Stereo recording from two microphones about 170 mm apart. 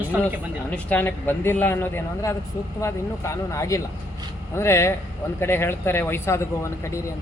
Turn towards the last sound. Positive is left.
turn(degrees=15)  # may be behind; listen again after turning